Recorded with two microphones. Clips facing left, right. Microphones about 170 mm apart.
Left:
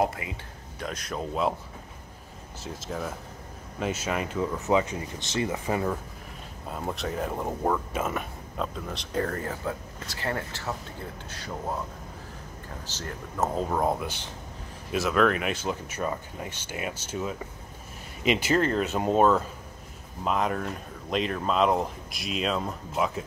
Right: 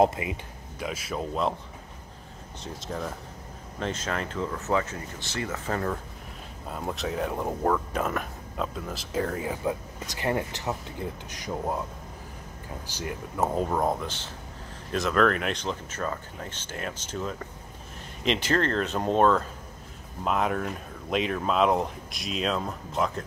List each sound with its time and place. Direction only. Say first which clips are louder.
0.0 s speech: right 5 dB; 20° right (ahead or behind)
0.7 s speech: right 1 dB; 5° right (ahead or behind)
2.6 s speech: even; 5° left (ahead or behind)
6.7 s speech: even; centre (ahead or behind)
12.8 s speech: right 4 dB; 10° right (ahead or behind); by 23.2 s 5° left (ahead or behind)